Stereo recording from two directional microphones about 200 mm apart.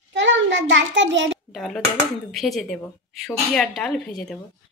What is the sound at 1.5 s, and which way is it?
A woman's voice, centre (ahead or behind).